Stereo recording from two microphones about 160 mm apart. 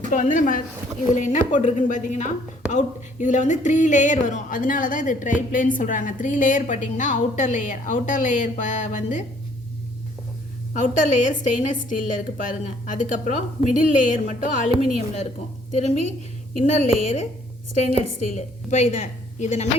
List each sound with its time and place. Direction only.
0.1 s a woman's voice: 55° left (ahead or behind)
10.8 s a woman's voice: 50° left (ahead or behind)
15.7 s a woman's voice: 45° left (ahead or behind)